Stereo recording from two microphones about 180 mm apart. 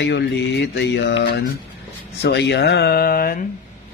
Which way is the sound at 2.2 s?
70° left (ahead or behind).